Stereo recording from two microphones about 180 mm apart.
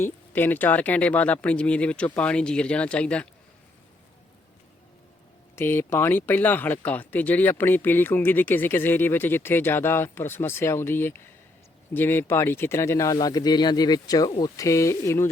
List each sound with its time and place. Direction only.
0.0 s speech: 10° left (ahead or behind)
5.5 s speech: 15° left (ahead or behind)